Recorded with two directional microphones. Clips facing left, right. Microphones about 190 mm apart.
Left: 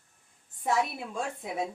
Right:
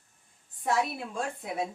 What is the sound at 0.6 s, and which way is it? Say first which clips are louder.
A woman's voice: even; centre (ahead or behind).